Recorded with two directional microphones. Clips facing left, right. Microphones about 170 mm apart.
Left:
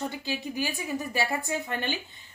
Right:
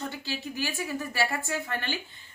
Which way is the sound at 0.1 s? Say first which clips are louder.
Left 2 dB; 15° left (ahead or behind).